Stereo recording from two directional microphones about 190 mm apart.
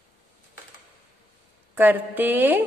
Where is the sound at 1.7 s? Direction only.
10° right (ahead or behind).